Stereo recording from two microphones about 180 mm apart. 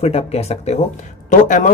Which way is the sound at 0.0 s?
35° left (ahead or behind).